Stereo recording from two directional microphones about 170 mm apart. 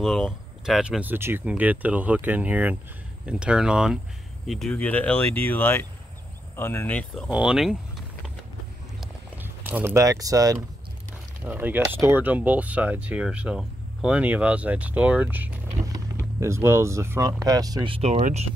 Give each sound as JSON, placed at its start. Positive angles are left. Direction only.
{"t": 0.0, "sound": "speech", "side_deg": 0}
{"t": 7.2, "sound": "speech", "side_deg": -5}
{"t": 9.4, "sound": "speech", "side_deg": -10}